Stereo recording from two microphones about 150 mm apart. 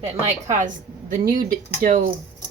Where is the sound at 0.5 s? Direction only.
60° right (ahead or behind).